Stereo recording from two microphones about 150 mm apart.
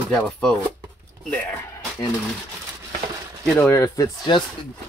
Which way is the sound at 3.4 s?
Centre (ahead or behind).